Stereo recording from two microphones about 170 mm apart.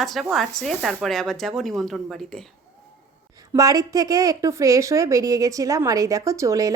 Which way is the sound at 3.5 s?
20° right (ahead or behind).